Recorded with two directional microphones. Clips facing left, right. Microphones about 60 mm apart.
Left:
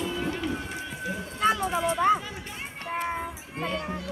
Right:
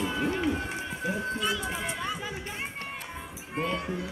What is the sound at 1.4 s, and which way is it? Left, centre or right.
Run, left.